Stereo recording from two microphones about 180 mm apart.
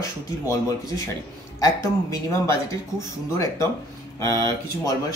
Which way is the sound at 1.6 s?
15° left (ahead or behind).